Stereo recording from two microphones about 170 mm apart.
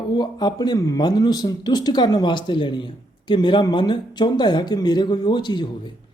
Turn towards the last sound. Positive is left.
turn(degrees=25)  # may be behind; listen again after turning